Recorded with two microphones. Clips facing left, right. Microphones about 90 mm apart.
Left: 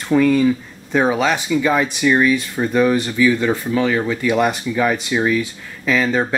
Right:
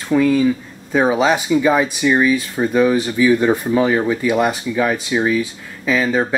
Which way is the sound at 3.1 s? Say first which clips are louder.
Right 2 dB; 20° right (ahead or behind).